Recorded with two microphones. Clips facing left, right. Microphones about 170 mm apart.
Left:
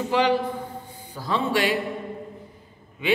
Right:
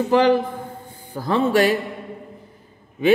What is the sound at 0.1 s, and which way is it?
A man's voice, 50° right (ahead or behind).